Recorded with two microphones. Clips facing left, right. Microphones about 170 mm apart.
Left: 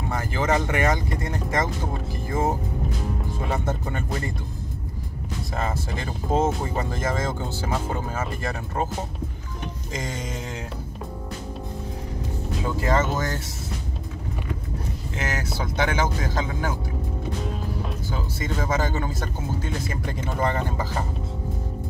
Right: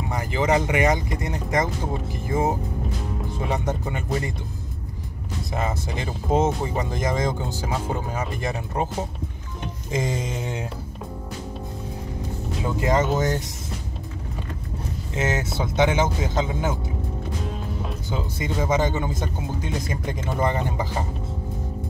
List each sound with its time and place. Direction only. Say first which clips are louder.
0.1 s speech: right 2 dB; 15° right (ahead or behind)
3.5 s speech: even; 15° right (ahead or behind)
5.5 s speech: right 2 dB; 20° right (ahead or behind)
9.9 s speech: right 6 dB; 25° right (ahead or behind)
12.6 s speech: right 2 dB; 15° right (ahead or behind)
15.1 s speech: right 5 dB; 25° right (ahead or behind)
17.4 s music: left 1 dB; centre (ahead or behind)
18.1 s speech: right 3 dB; 20° right (ahead or behind)